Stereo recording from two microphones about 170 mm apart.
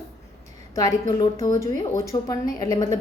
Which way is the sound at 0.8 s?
20° left (ahead or behind).